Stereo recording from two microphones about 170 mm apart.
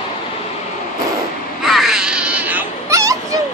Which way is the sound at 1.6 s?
Centre (ahead or behind).